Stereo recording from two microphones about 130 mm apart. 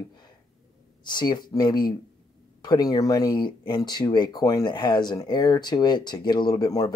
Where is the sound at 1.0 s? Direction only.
35° left (ahead or behind).